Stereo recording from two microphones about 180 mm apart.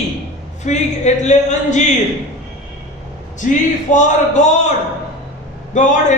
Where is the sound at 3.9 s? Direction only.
45° left (ahead or behind).